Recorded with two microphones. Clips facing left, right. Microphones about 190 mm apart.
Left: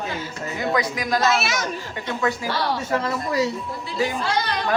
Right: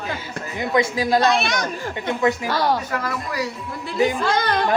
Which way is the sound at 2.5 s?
45° right (ahead or behind).